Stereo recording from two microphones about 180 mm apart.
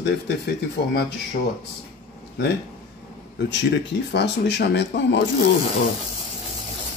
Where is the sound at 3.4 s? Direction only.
75° left (ahead or behind).